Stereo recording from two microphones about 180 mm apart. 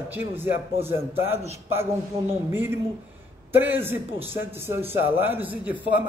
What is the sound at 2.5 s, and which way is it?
A man's voice, 10° right (ahead or behind).